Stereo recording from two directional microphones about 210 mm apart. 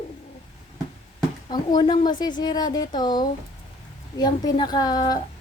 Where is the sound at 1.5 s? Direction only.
20° left (ahead or behind).